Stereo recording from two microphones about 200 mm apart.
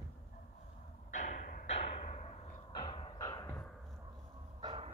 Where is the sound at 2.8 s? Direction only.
25° left (ahead or behind).